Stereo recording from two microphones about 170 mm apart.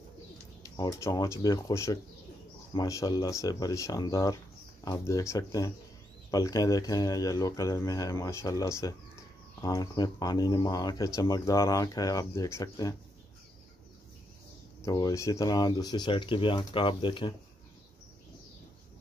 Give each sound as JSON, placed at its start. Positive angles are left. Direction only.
{"t": 0.7, "sound": "speech", "side_deg": 20}
{"t": 14.9, "sound": "speech", "side_deg": 20}